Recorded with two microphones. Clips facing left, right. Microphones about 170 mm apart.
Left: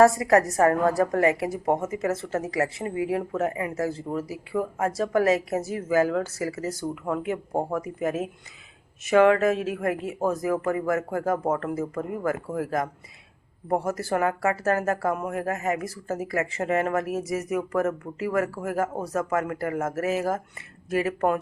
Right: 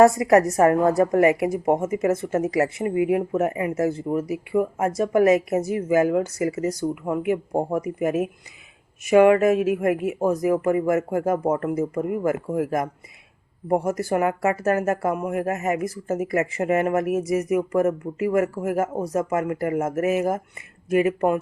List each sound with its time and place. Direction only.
0.0 s a woman's voice: 20° right (ahead or behind)
15.4 s speech: 35° left (ahead or behind)
15.6 s a woman's voice: 20° right (ahead or behind)